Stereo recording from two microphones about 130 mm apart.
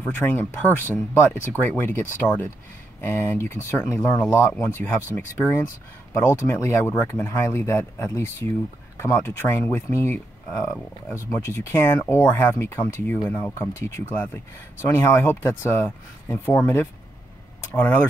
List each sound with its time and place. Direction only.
0.0 s speech: 15° left (ahead or behind)